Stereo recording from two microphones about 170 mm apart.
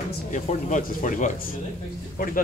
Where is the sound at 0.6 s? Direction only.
45° left (ahead or behind).